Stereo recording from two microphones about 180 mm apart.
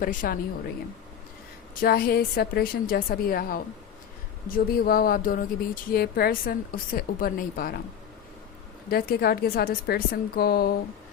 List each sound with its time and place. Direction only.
0.0 s speech: 50° left (ahead or behind)
1.8 s a woman's voice: 55° left (ahead or behind)
8.9 s a woman's voice: 60° left (ahead or behind)